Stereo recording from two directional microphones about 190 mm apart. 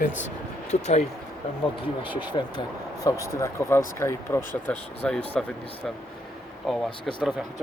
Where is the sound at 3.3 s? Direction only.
15° left (ahead or behind).